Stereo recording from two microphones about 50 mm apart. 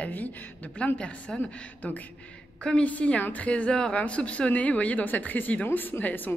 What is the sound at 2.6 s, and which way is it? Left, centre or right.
Speech, left.